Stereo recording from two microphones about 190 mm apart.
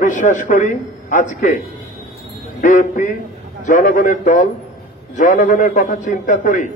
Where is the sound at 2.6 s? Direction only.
45° left (ahead or behind).